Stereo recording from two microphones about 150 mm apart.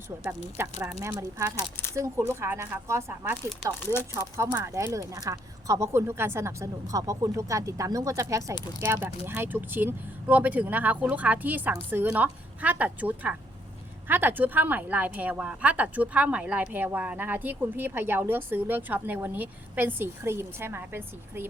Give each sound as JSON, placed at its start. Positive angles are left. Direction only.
{"t": 0.5, "sound": "speech", "side_deg": -15}